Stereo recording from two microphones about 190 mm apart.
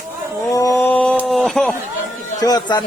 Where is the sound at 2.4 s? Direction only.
20° left (ahead or behind).